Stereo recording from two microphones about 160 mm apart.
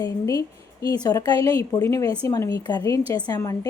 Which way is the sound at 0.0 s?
20° left (ahead or behind).